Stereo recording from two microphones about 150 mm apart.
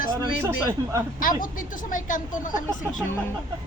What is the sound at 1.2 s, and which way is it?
A woman's voice, 65° left (ahead or behind).